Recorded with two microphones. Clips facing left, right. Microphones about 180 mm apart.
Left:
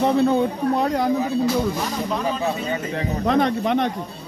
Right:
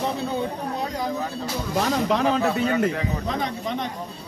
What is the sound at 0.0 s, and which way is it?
Speech, 60° left (ahead or behind).